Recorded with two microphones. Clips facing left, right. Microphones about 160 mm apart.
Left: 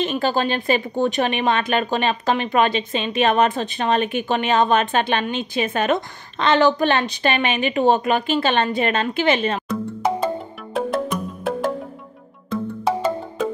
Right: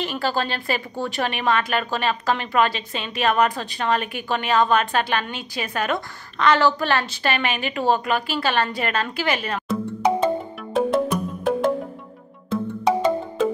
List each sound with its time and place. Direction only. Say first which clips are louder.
0.0 s speech: left 4 dB; 20° left (ahead or behind)
9.7 s music: right 1 dB; centre (ahead or behind)
12.4 s music: right 1 dB; centre (ahead or behind)